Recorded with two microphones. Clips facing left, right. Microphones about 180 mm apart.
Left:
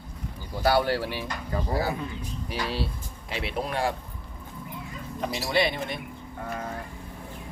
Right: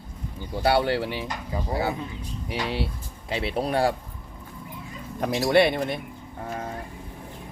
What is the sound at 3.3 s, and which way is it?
Speech, 35° right (ahead or behind).